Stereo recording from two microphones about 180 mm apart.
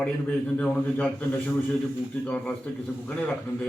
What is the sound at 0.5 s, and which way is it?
Speech, 5° left (ahead or behind).